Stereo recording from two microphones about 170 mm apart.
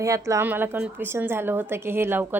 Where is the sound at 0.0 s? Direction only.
20° right (ahead or behind).